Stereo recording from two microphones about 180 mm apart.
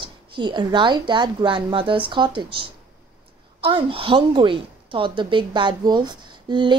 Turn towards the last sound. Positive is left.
turn(degrees=-25)  # may be behind; listen again after turning